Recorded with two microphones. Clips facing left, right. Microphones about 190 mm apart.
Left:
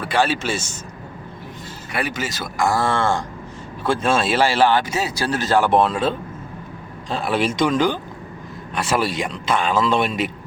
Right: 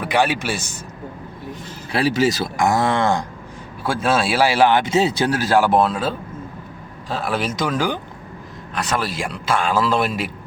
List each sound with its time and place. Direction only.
0.0 s a man's voice: 15° right (ahead or behind)
1.9 s speech: 30° right (ahead or behind)
2.6 s speech: 20° right (ahead or behind)
5.3 s a man's voice: 10° right (ahead or behind)